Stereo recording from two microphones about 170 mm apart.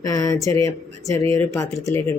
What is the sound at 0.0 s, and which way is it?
Speech, 20° left (ahead or behind).